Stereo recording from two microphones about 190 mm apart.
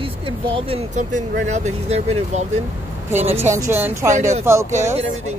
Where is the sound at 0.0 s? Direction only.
25° right (ahead or behind).